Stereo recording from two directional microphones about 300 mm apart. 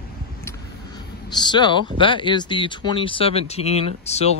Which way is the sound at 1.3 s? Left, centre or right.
Centre.